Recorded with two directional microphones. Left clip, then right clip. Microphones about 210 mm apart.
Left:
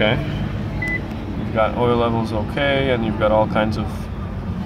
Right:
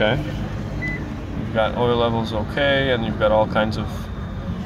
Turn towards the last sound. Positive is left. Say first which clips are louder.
# left 1 dB
turn(degrees=0)  # may be behind; listen again after turning